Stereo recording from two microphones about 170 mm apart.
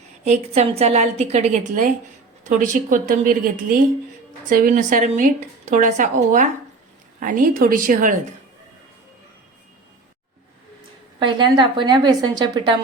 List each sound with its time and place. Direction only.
0.3 s a woman's voice: 40° right (ahead or behind)
11.2 s a woman's voice: 30° right (ahead or behind)